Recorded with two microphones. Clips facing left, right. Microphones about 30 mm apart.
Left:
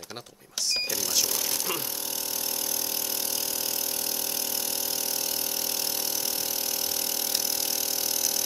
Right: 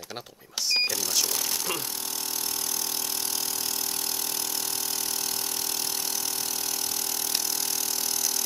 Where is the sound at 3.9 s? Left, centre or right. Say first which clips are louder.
Even; centre.